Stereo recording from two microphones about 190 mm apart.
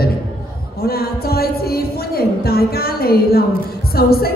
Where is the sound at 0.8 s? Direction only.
55° left (ahead or behind).